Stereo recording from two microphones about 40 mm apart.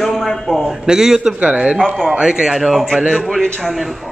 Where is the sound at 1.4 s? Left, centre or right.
Right.